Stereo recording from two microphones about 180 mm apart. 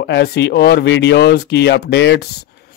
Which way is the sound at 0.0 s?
65° left (ahead or behind).